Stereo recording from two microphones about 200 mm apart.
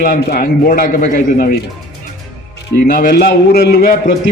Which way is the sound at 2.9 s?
45° left (ahead or behind).